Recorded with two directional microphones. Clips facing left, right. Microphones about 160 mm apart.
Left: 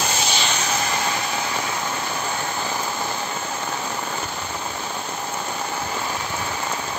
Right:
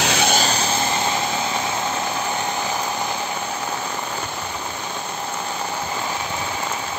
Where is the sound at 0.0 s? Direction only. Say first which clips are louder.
Right 4 dB; 80° right.